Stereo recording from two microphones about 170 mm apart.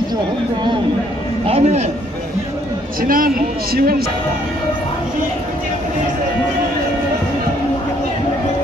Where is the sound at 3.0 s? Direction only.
55° right (ahead or behind).